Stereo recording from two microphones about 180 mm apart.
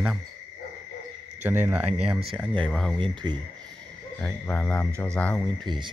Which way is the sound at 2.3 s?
5° left (ahead or behind).